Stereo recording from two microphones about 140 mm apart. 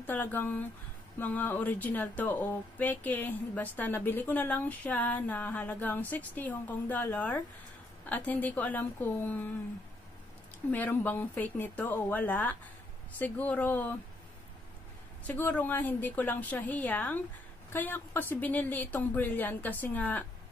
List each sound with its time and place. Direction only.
0.0 s speech: 15° left (ahead or behind)
10.7 s speech: 15° left (ahead or behind)
15.2 s speech: 10° left (ahead or behind)